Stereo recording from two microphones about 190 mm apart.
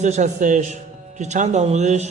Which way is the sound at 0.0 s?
40° right (ahead or behind).